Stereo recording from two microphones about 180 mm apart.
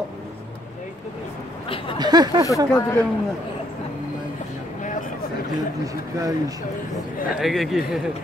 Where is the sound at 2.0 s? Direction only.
20° right (ahead or behind).